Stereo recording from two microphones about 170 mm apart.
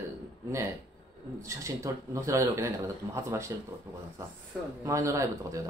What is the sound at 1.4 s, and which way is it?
Speech, 20° right (ahead or behind).